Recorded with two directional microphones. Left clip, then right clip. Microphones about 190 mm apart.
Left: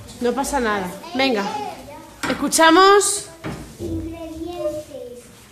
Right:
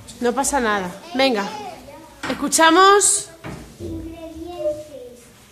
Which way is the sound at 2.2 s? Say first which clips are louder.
Left 1 dB; 5° right (ahead or behind).